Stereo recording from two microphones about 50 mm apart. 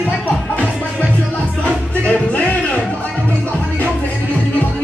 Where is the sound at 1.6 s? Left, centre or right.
Left.